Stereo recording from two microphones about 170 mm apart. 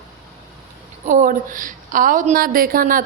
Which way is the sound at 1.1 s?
50° right (ahead or behind).